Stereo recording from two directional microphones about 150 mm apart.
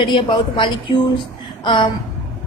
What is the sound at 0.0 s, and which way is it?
A woman's voice, 30° left (ahead or behind).